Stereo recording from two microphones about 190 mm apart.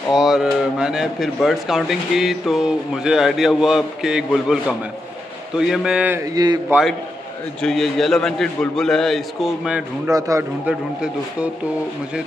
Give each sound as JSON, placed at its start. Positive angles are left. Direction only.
{"t": 0.1, "sound": "a man's voice", "side_deg": 0}
{"t": 6.7, "sound": "speech", "side_deg": 0}
{"t": 10.1, "sound": "a man's voice", "side_deg": -15}